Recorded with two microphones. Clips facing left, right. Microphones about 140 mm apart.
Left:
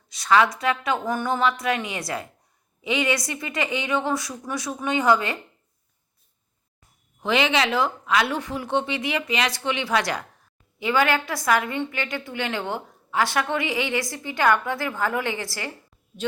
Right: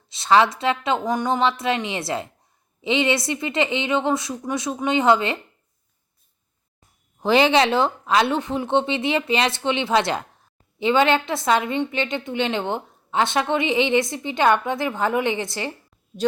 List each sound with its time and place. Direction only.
0.1 s a woman's voice: 25° right (ahead or behind)
7.2 s a woman's voice: 35° right (ahead or behind)